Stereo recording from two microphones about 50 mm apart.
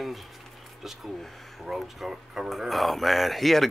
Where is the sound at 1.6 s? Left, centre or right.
Centre.